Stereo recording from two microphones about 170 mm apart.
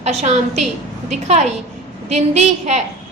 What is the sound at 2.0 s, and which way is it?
Speech, 40° right (ahead or behind).